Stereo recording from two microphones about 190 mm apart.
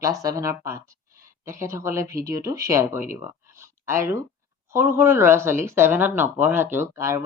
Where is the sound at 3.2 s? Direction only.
15° right (ahead or behind).